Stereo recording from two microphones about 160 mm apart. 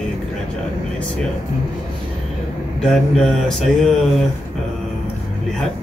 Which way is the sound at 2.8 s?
Centre (ahead or behind).